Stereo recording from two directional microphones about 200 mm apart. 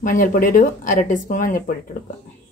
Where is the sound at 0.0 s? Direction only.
40° left (ahead or behind).